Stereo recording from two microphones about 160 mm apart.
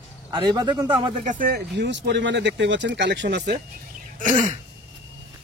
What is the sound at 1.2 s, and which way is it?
Speech, 60° right (ahead or behind).